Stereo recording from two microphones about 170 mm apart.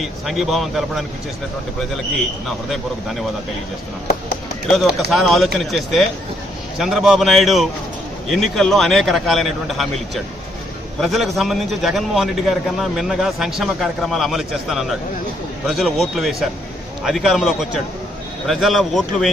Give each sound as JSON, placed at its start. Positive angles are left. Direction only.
{"t": 0.0, "sound": "a man's voice", "side_deg": 0}
{"t": 2.6, "sound": "a man's voice", "side_deg": 0}
{"t": 4.8, "sound": "a man's voice", "side_deg": 0}
{"t": 11.0, "sound": "a man's voice", "side_deg": 0}